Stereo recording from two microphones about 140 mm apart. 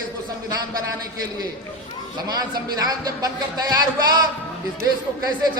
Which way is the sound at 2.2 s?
30° right (ahead or behind).